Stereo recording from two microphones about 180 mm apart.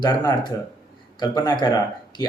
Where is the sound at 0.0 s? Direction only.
20° left (ahead or behind).